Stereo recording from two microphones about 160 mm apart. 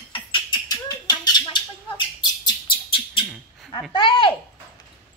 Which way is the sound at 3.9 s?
30° left (ahead or behind).